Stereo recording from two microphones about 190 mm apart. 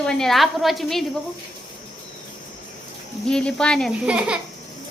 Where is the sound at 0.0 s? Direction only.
5° left (ahead or behind).